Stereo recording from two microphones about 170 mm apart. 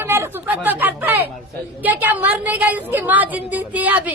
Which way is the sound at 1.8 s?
10° right (ahead or behind).